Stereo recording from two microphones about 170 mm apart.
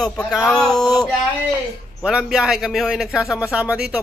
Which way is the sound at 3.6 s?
5° right (ahead or behind).